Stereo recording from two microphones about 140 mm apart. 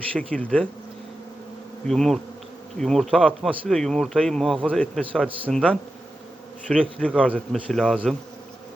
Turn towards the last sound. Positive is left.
turn(degrees=0)  # may be behind; listen again after turning